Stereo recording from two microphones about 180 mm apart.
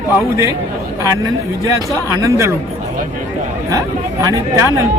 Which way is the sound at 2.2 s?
15° right (ahead or behind).